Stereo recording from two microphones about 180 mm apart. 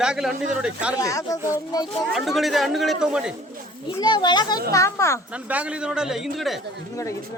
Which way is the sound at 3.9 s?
25° left (ahead or behind).